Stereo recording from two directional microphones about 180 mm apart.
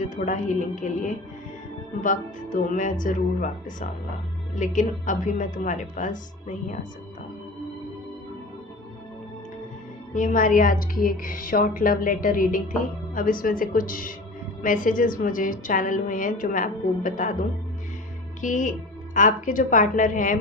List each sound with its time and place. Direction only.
0.0 s a woman's voice: 45° left (ahead or behind)
10.2 s a woman's voice: 45° left (ahead or behind)
18.3 s a woman's voice: 45° left (ahead or behind)